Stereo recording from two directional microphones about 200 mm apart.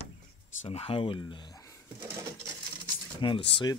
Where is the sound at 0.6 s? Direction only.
30° left (ahead or behind).